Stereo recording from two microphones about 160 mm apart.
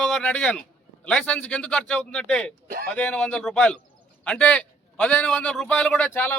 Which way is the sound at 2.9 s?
10° left (ahead or behind).